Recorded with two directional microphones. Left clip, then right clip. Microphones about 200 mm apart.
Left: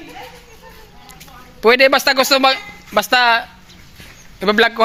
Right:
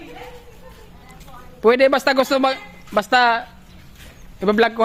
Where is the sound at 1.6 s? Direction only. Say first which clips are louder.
Left 3 dB; 15° right (ahead or behind).